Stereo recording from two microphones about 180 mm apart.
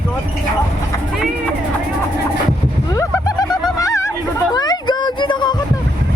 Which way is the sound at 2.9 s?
20° left (ahead or behind).